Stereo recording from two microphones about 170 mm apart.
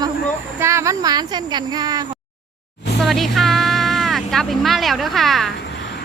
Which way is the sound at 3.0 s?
Centre (ahead or behind).